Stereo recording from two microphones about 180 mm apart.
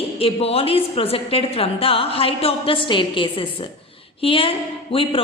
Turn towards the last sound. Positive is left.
turn(degrees=30)  # may be behind; listen again after turning